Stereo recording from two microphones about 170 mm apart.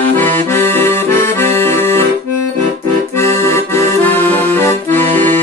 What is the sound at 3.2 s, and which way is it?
Accordion, 15° left (ahead or behind).